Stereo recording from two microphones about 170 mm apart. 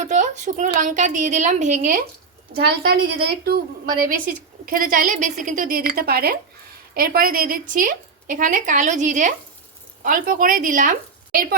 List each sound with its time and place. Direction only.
0.1 s a sound: 45° right (ahead or behind)
0.8 s a woman's voice: 50° right (ahead or behind)
2.6 s a woman's voice: 70° right (ahead or behind)